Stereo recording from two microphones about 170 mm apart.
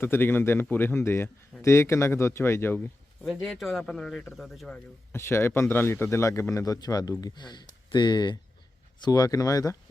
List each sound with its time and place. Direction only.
0.0 s speech: 15° left (ahead or behind)
3.2 s speech: centre (ahead or behind); by 9.7 s 20° left (ahead or behind)